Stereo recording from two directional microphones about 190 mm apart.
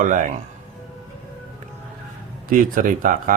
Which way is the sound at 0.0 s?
45° right (ahead or behind).